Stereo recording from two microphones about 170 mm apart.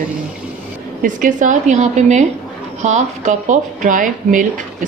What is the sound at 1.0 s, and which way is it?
Speech, 50° right (ahead or behind).